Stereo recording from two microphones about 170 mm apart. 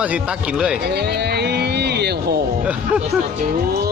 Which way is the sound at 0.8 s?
75° right (ahead or behind).